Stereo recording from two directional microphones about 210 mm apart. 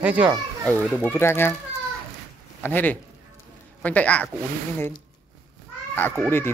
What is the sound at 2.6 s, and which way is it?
Speech, 10° left (ahead or behind).